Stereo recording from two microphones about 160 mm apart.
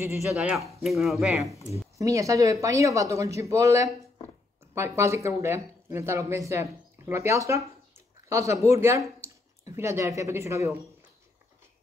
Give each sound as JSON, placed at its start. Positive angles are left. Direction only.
{"t": 0.4, "sound": "speech", "side_deg": 0}
{"t": 2.0, "sound": "speech", "side_deg": -20}